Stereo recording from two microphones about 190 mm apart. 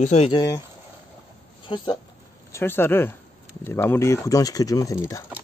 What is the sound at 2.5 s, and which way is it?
Speech, 10° left (ahead or behind).